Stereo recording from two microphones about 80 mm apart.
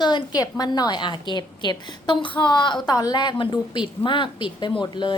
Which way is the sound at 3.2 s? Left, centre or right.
Left.